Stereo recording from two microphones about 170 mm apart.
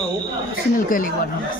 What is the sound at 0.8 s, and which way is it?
Speech, 55° left (ahead or behind).